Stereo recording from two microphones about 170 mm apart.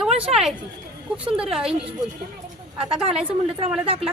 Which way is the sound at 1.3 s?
5° right (ahead or behind).